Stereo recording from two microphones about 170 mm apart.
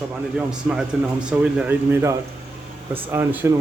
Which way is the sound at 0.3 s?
5° right (ahead or behind).